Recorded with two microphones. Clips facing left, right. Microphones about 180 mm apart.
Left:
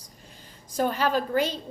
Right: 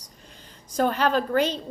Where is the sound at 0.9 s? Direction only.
10° left (ahead or behind).